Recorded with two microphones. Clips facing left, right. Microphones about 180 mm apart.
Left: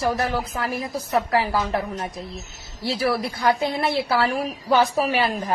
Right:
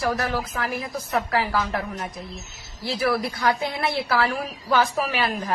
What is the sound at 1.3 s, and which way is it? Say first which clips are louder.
A woman's voice: left 1 dB; 25° left (ahead or behind).